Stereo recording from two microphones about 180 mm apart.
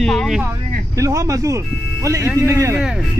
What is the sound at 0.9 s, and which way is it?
A man's voice, 15° right (ahead or behind).